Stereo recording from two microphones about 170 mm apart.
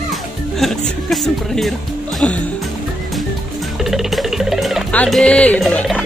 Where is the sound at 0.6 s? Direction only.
Centre (ahead or behind).